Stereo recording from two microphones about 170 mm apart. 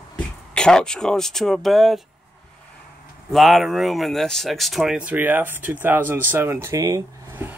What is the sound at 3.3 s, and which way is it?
Speech, centre (ahead or behind).